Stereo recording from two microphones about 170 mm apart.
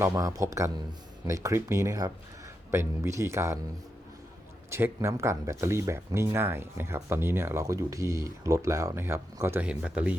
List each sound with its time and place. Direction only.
0.0 s speech: 20° right (ahead or behind)
4.7 s speech: 15° right (ahead or behind)